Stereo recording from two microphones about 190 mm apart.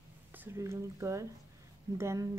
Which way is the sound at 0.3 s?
10° right (ahead or behind).